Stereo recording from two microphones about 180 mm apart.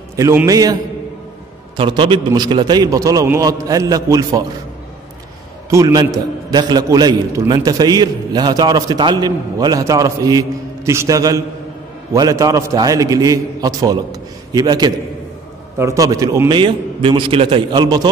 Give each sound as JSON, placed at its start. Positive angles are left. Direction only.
{"t": 0.1, "sound": "a man's voice", "side_deg": -15}
{"t": 1.8, "sound": "a man's voice", "side_deg": -25}
{"t": 5.7, "sound": "a man's voice", "side_deg": -15}